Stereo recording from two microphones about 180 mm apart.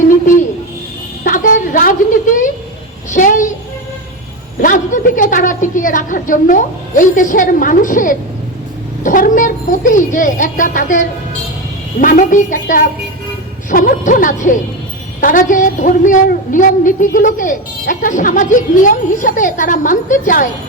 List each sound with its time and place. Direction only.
1.2 s a sound: 50° left (ahead or behind)
3.1 s a woman's voice: 45° left (ahead or behind)
4.6 s a woman's voice: 45° left (ahead or behind)